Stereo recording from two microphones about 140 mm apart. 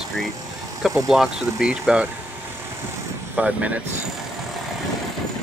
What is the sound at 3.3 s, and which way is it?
Speech, 10° right (ahead or behind).